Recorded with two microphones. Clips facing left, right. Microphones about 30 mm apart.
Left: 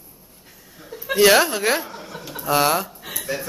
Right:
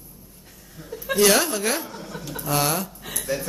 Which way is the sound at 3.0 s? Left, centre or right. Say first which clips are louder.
Even; centre.